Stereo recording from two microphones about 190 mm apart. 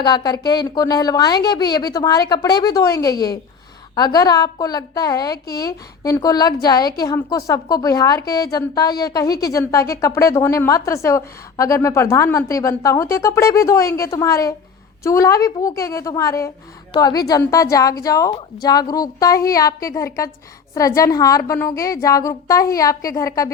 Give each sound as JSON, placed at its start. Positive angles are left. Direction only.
{"t": 0.0, "sound": "a woman's voice", "side_deg": 20}